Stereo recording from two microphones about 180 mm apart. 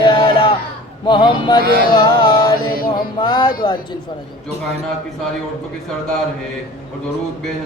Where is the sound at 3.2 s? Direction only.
25° left (ahead or behind).